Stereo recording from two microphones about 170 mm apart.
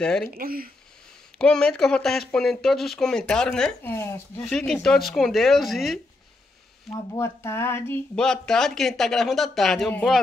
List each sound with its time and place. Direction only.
0.0 s speech: 5° left (ahead or behind)
0.4 s speech: 60° right (ahead or behind)
1.4 s speech: 5° left (ahead or behind)
4.4 s speech: centre (ahead or behind)
6.9 s speech: 15° left (ahead or behind)
8.2 s speech: 5° left (ahead or behind)